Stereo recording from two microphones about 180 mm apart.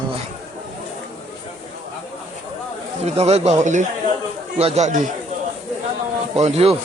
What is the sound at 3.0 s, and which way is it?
Speech, 35° right (ahead or behind).